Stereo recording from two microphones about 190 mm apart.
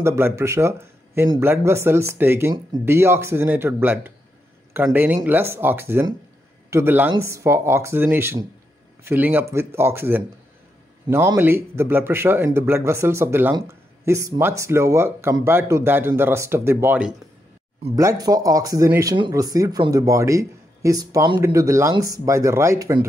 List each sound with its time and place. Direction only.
0.0 s speech: 15° right (ahead or behind)